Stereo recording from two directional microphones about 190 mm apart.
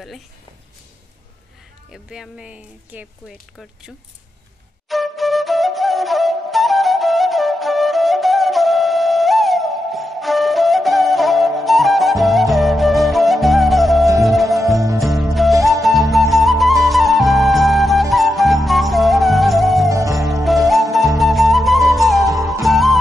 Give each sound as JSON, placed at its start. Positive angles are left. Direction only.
{"t": 1.9, "sound": "speech", "side_deg": -5}
{"t": 4.8, "sound": "flute", "side_deg": 0}
{"t": 15.0, "sound": "music", "side_deg": 0}
{"t": 15.3, "sound": "flute", "side_deg": 0}
{"t": 18.1, "sound": "music", "side_deg": 0}
{"t": 19.9, "sound": "music", "side_deg": -15}
{"t": 20.2, "sound": "music", "side_deg": 0}
{"t": 21.2, "sound": "flute", "side_deg": 0}